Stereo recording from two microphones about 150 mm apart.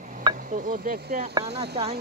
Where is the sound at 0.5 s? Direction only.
60° right (ahead or behind).